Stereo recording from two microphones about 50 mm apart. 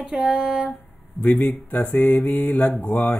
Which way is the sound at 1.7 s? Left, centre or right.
Left.